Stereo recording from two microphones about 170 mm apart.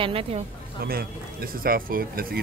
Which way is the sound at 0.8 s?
65° right (ahead or behind).